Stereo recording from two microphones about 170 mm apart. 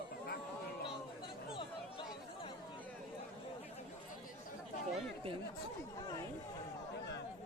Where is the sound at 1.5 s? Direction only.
30° left (ahead or behind).